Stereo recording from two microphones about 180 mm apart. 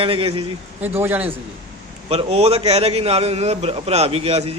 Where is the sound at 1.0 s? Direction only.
10° right (ahead or behind).